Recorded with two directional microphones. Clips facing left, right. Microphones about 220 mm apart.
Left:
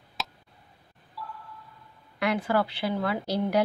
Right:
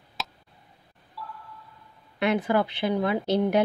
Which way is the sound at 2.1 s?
20° right (ahead or behind).